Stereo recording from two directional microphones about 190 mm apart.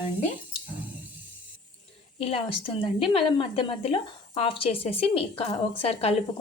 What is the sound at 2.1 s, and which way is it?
A woman's voice, 30° left (ahead or behind).